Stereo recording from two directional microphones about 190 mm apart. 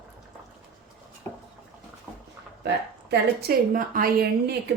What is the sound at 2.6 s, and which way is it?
A woman's voice, 60° right (ahead or behind).